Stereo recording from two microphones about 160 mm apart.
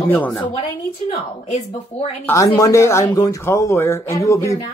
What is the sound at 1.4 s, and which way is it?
Speech, 45° left (ahead or behind).